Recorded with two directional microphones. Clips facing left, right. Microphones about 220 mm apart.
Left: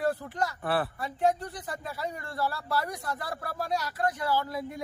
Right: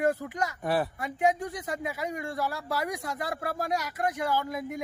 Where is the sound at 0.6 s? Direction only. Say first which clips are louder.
Right 4 dB; 10° right (ahead or behind).